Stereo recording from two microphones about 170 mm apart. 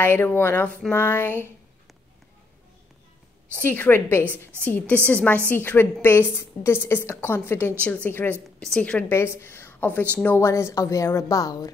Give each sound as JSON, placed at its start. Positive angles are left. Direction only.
{"t": 0.0, "sound": "a woman's voice", "side_deg": 10}
{"t": 3.5, "sound": "a woman's voice", "side_deg": 10}